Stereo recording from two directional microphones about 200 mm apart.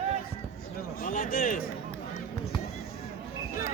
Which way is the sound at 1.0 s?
45° left (ahead or behind).